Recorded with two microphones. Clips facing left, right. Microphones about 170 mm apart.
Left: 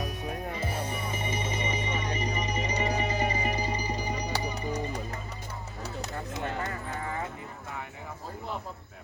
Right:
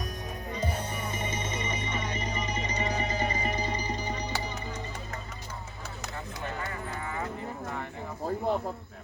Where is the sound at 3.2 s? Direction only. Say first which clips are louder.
Left 1 dB; 30° right (ahead or behind).